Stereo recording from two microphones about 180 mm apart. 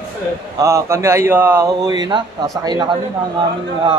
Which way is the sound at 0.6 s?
15° right (ahead or behind).